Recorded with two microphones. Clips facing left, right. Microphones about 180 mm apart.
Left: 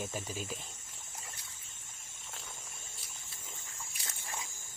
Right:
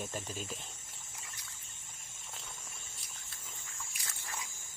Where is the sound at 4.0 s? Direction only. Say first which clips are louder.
Left 2 dB; 25° left (ahead or behind).